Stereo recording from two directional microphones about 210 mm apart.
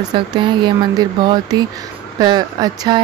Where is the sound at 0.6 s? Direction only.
20° right (ahead or behind).